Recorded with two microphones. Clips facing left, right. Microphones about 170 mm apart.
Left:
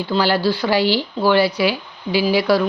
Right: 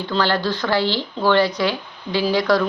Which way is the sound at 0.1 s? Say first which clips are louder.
Left 3 dB; 10° left (ahead or behind).